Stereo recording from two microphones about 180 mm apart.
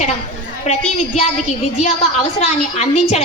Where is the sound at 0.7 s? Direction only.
40° left (ahead or behind).